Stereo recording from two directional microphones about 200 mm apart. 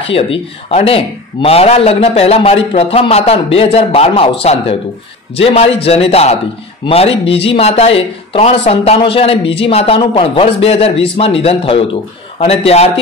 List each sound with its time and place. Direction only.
0.1 s speech: 25° left (ahead or behind)